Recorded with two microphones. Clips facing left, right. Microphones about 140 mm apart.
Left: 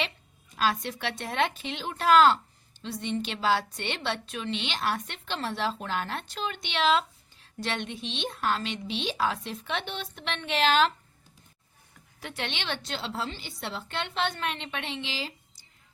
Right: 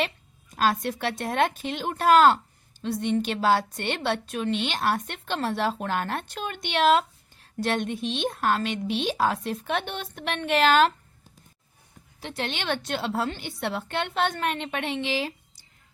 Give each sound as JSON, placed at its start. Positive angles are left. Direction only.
{"t": 0.5, "sound": "a woman's voice", "side_deg": -45}
{"t": 12.2, "sound": "a woman's voice", "side_deg": -35}